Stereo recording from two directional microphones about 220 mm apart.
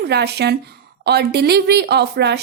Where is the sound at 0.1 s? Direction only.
50° right (ahead or behind).